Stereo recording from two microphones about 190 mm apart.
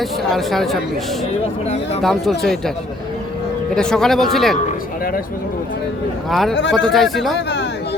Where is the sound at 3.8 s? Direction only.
5° left (ahead or behind).